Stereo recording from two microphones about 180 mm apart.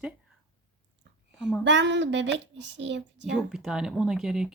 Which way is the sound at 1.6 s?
80° right.